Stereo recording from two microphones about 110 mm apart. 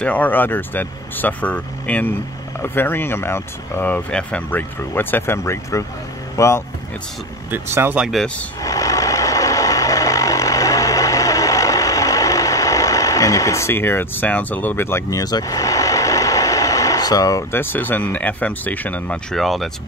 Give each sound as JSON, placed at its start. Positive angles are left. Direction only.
{"t": 0.0, "sound": "speech", "side_deg": 15}
{"t": 7.5, "sound": "speech", "side_deg": -20}
{"t": 8.0, "sound": "speech", "side_deg": 0}
{"t": 8.6, "sound": "vehicle", "side_deg": 30}
{"t": 19.3, "sound": "speech", "side_deg": 0}